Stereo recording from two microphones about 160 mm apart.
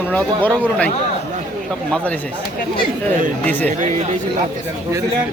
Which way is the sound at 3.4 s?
10° left (ahead or behind).